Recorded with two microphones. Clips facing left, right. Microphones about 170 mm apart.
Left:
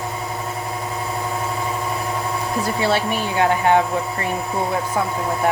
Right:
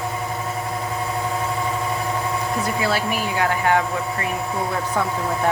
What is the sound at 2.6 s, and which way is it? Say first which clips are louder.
Speech: left 4 dB; 25° left (ahead or behind).